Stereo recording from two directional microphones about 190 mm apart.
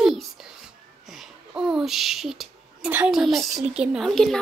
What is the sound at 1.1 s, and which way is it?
A woman's voice, 5° right (ahead or behind).